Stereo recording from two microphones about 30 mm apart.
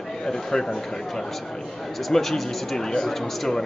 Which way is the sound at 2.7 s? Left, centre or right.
Left.